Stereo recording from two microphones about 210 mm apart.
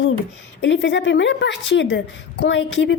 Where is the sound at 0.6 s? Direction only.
60° left (ahead or behind).